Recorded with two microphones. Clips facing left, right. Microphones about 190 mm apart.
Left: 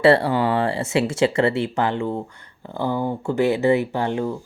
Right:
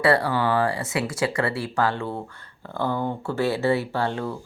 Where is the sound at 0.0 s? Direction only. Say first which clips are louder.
Left 5 dB; 25° left (ahead or behind).